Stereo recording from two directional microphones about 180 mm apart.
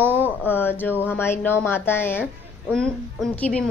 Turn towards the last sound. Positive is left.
turn(degrees=5)  # may be behind; listen again after turning